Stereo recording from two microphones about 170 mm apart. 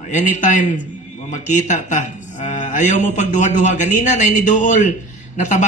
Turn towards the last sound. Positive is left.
turn(degrees=45)  # may be behind; listen again after turning